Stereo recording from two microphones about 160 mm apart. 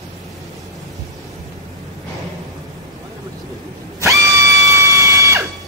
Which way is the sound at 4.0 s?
20° right (ahead or behind).